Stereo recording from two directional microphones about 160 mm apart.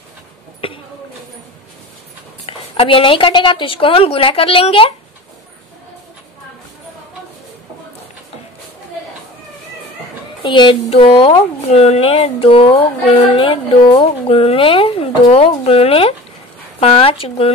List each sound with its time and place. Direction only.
0.6 s a sound: 35° left (ahead or behind)
2.4 s speech: 35° left (ahead or behind)
10.4 s speech: 30° left (ahead or behind)